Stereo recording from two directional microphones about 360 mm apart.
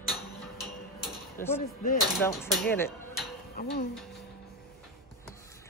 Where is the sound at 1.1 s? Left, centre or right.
Centre.